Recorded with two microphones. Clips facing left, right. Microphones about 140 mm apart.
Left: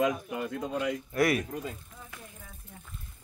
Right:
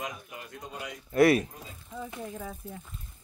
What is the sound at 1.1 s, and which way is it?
Speech, 30° right (ahead or behind).